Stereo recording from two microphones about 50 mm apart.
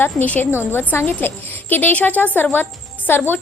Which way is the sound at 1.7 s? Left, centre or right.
Left.